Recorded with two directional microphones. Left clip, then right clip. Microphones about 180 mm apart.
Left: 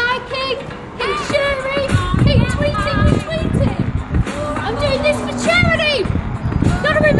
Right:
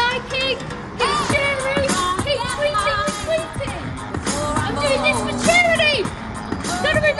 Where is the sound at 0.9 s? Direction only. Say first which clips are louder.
Right 1 dB; 50° right (ahead or behind).